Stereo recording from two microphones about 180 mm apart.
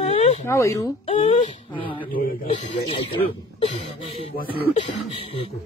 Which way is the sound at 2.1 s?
50° left (ahead or behind).